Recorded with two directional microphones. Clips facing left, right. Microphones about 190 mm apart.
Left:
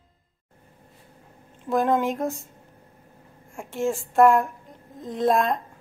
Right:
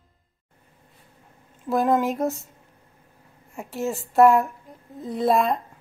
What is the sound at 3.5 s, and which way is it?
A woman's voice, 5° right (ahead or behind).